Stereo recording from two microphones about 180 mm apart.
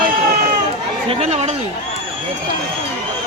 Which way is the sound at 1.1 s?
35° right (ahead or behind).